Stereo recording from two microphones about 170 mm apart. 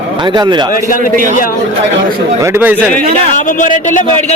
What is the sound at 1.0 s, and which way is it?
Speech, 50° right (ahead or behind).